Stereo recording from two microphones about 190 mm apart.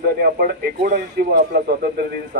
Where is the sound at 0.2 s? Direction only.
55° right (ahead or behind).